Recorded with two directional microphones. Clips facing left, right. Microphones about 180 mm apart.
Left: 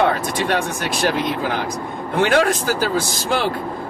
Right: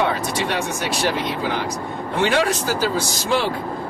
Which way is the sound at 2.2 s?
50° left (ahead or behind).